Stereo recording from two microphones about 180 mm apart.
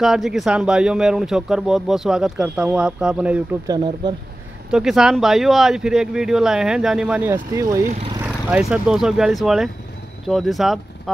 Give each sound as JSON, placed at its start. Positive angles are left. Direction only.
{"t": 0.0, "sound": "speech", "side_deg": 0}
{"t": 3.6, "sound": "speech", "side_deg": -20}
{"t": 4.6, "sound": "speech", "side_deg": -5}
{"t": 8.2, "sound": "speech", "side_deg": -5}